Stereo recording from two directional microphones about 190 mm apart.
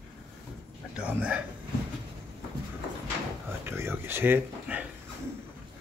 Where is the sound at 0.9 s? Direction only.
5° right (ahead or behind).